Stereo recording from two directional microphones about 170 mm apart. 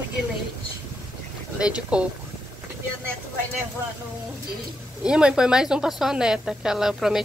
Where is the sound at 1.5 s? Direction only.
5° right (ahead or behind).